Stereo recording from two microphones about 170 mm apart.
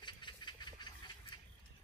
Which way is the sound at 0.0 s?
25° left (ahead or behind).